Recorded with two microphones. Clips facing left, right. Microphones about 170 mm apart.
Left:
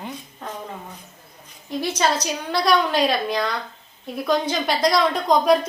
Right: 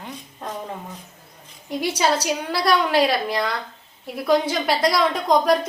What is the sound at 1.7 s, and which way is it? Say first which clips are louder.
A woman's voice: right 1 dB; 10° right (ahead or behind).